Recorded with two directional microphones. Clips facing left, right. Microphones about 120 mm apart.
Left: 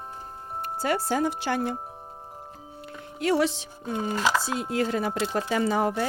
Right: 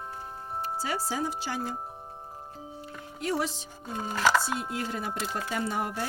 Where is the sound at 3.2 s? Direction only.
75° left (ahead or behind).